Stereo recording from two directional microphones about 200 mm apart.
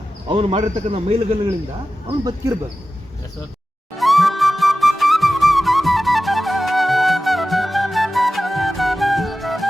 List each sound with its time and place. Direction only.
0.3 s speech: 30° right (ahead or behind)
2.0 s speech: 20° right (ahead or behind)
3.9 s flute: centre (ahead or behind)